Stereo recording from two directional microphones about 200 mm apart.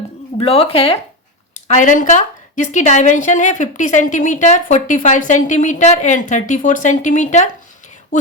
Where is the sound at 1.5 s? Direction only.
40° left (ahead or behind).